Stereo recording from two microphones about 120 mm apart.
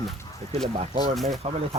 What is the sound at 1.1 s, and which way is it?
Speech, centre (ahead or behind).